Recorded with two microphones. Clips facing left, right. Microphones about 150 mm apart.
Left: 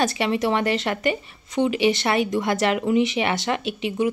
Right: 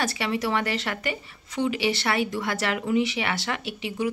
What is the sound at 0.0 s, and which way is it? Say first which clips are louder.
Speech: left 5 dB; 20° left (ahead or behind).